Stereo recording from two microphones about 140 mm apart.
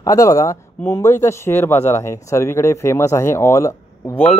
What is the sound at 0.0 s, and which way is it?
Speech, 25° left (ahead or behind).